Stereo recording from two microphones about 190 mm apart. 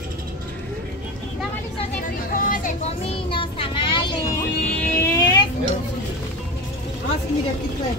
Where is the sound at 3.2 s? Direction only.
30° left (ahead or behind).